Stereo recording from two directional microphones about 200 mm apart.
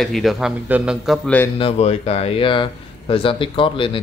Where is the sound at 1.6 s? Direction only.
30° left (ahead or behind).